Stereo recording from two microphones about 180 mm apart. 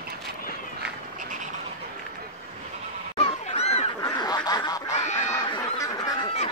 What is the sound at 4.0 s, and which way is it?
Quack, 20° left (ahead or behind).